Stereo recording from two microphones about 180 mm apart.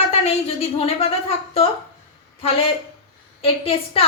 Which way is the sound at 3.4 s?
30° left (ahead or behind).